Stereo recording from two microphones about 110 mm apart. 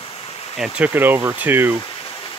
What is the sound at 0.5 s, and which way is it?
Speech, 5° right (ahead or behind).